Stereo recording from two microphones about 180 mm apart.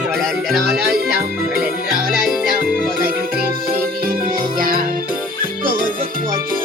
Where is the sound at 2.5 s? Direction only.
50° right (ahead or behind).